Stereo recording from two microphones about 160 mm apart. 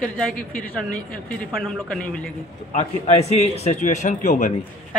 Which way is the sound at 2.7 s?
40° left (ahead or behind).